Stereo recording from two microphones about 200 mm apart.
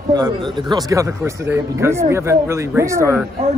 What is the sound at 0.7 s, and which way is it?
A man's voice, 15° right (ahead or behind).